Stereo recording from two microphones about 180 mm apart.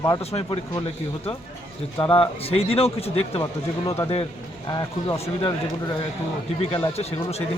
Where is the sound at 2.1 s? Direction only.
30° left (ahead or behind).